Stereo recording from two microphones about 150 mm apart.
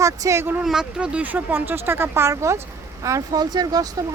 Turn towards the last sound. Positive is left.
turn(degrees=-25)  # may be behind; listen again after turning